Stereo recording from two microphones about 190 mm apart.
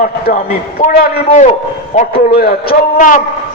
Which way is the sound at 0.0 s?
45° left (ahead or behind).